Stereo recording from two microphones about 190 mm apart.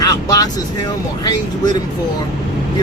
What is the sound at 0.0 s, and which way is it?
Vehicle, 20° left (ahead or behind).